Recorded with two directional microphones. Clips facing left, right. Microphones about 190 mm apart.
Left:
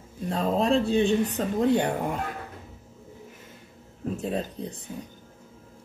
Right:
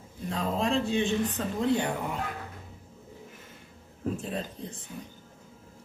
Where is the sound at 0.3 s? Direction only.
35° left (ahead or behind).